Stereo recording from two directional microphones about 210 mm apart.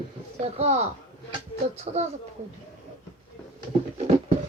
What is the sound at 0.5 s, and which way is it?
Speech, 30° right (ahead or behind).